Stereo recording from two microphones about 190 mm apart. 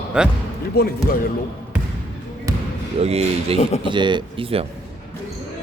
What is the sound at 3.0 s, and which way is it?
Speech, 35° right (ahead or behind).